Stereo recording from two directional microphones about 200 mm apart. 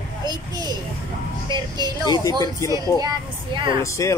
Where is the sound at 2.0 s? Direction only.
20° left (ahead or behind).